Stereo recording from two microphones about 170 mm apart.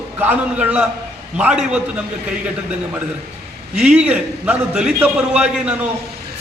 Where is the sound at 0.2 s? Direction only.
10° right (ahead or behind).